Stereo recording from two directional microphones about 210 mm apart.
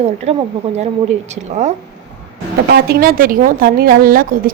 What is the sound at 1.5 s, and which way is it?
Speech, 35° right (ahead or behind).